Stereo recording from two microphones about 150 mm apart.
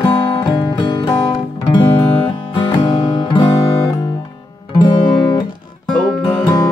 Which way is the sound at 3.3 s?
35° left (ahead or behind).